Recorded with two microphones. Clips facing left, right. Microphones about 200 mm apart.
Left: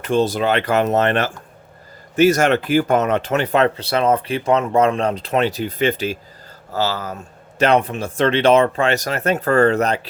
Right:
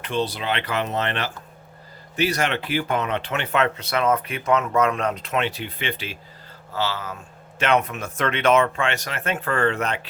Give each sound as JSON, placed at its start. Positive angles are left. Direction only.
{"t": 0.0, "sound": "speech", "side_deg": 45}